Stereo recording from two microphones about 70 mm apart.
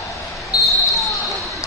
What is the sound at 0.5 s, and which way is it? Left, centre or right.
Basketball bounce, left.